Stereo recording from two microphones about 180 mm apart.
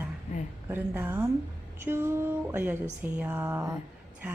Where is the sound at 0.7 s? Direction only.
10° right (ahead or behind).